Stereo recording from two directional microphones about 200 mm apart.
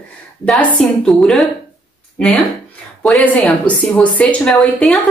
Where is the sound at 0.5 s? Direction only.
5° left (ahead or behind).